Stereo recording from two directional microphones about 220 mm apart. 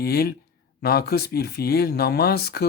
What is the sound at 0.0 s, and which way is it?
Speech, 45° left (ahead or behind).